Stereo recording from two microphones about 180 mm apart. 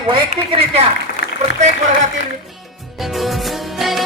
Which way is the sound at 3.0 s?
Centre (ahead or behind).